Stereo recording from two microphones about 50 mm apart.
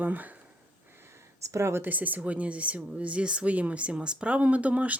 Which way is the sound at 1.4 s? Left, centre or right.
Right.